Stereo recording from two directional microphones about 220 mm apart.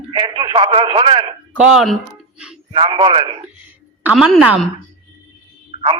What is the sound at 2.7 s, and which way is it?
Speech, 20° right (ahead or behind).